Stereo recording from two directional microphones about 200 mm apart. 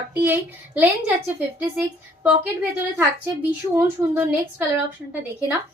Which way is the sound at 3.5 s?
15° right (ahead or behind).